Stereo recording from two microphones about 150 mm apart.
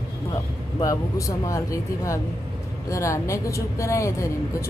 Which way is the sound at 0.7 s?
20° left (ahead or behind).